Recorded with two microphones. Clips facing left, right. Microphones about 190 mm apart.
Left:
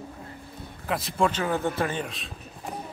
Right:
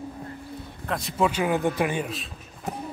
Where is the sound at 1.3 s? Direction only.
15° right (ahead or behind).